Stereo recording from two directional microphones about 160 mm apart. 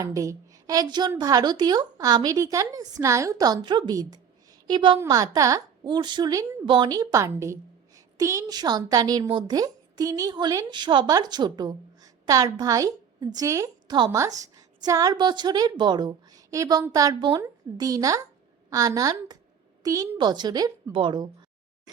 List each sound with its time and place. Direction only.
0.0 s a woman's voice: 20° right (ahead or behind)